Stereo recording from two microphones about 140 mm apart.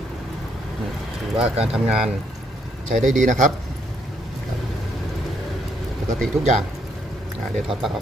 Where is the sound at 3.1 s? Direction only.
65° right (ahead or behind).